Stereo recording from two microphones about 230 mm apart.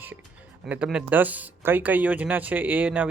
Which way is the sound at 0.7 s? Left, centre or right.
Centre.